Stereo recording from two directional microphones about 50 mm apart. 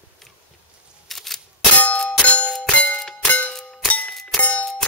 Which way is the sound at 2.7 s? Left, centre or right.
Left.